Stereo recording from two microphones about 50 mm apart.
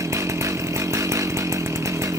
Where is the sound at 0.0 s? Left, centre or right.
Right.